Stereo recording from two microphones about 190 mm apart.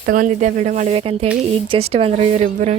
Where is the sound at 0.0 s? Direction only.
45° right (ahead or behind).